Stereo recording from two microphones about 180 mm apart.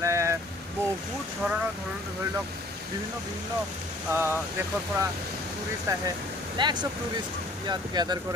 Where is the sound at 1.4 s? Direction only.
5° right (ahead or behind).